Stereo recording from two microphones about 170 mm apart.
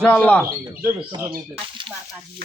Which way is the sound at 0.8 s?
15° right (ahead or behind).